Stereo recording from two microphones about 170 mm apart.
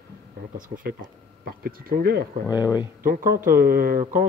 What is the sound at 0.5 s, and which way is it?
Speech, 55° right (ahead or behind).